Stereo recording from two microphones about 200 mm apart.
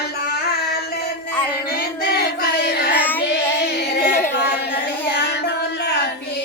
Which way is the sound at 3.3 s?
55° left (ahead or behind).